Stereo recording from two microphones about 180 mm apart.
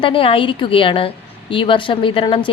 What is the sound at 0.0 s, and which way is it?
A woman's voice, 30° left (ahead or behind).